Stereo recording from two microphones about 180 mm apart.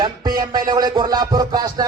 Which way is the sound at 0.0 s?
20° right (ahead or behind).